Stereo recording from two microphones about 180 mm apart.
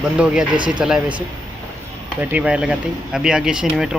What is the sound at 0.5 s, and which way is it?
Speech, 25° right (ahead or behind).